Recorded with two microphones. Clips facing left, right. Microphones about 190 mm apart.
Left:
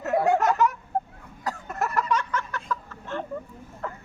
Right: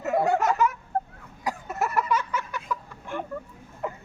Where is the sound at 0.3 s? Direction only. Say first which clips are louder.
Left 2 dB; centre (ahead or behind); by 4.0 s 15° right (ahead or behind).